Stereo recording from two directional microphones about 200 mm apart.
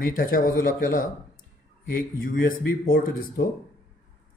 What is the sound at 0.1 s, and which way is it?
Speech, 45° left (ahead or behind).